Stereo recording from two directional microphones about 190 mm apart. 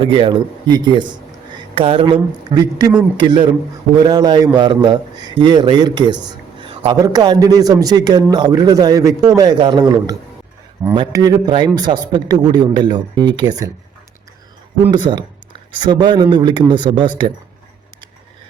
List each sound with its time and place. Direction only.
0.0 s a man's voice: 25° right (ahead or behind)
14.8 s a man's voice: 25° right (ahead or behind)